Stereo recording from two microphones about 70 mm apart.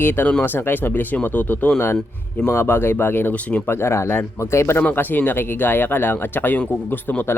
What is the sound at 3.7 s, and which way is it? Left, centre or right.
Speech, left.